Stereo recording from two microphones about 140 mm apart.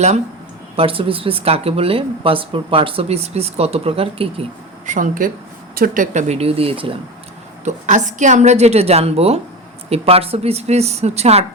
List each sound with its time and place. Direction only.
0.8 s speech: 40° right (ahead or behind)
4.9 s speech: 65° right (ahead or behind)
5.7 s speech: 80° right; by 7.0 s 40° right (ahead or behind)
7.6 s speech: 60° right (ahead or behind)